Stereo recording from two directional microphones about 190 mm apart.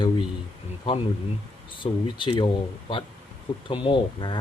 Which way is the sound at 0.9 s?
25° left (ahead or behind).